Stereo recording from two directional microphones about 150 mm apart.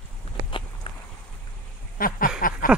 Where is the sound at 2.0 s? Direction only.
70° left (ahead or behind).